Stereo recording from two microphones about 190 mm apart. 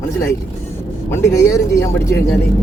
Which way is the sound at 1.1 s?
15° left (ahead or behind).